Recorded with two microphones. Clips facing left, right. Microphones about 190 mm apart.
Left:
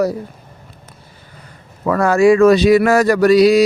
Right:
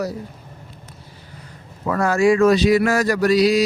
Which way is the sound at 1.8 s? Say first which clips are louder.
Left 5 dB; 90° left.